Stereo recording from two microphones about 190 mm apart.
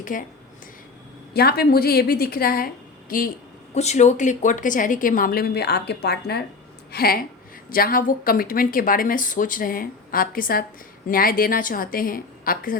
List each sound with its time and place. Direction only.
0.0 s speech: 45° left (ahead or behind)
1.3 s a woman's voice: 55° left (ahead or behind)
3.8 s a woman's voice: 35° left (ahead or behind)